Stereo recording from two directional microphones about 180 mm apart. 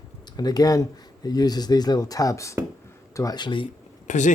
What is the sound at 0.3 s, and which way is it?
Speech, 20° left (ahead or behind).